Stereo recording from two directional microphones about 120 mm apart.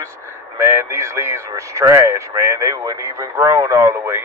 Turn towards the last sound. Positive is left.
turn(degrees=-20)  # may be behind; listen again after turning